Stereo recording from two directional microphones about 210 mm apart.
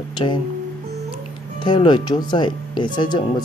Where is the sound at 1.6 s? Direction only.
20° left (ahead or behind).